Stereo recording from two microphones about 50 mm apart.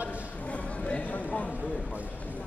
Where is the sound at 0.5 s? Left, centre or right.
Left.